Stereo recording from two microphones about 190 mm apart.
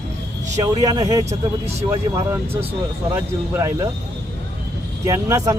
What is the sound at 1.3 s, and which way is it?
Speech, 35° right (ahead or behind).